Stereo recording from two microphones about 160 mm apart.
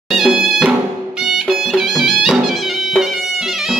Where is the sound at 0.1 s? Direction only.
Centre (ahead or behind).